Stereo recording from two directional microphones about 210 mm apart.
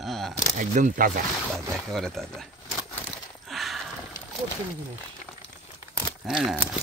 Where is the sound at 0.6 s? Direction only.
40° right (ahead or behind).